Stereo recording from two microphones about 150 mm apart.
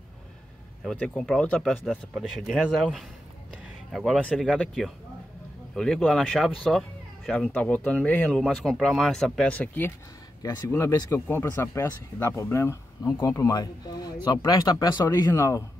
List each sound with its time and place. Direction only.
0.8 s speech: 5° left (ahead or behind)